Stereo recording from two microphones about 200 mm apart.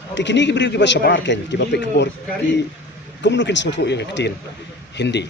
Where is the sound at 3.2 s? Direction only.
60° left (ahead or behind).